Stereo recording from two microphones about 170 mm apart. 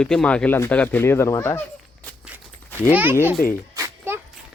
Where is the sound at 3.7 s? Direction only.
15° right (ahead or behind).